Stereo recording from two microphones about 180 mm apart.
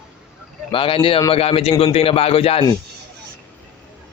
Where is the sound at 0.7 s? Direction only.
30° left (ahead or behind).